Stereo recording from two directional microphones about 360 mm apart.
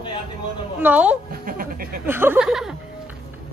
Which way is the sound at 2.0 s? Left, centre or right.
Centre.